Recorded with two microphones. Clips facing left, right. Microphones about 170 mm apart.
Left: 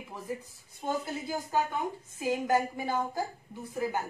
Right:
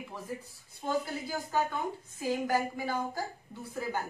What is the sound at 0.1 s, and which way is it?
Speech, 20° left (ahead or behind).